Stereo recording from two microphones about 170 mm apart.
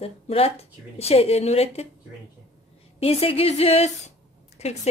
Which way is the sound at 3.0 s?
35° left (ahead or behind).